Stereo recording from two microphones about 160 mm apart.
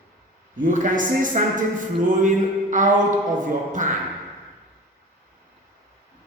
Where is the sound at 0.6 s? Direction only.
55° right (ahead or behind).